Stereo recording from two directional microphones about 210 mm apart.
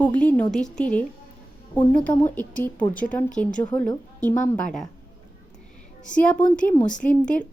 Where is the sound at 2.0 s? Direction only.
10° left (ahead or behind).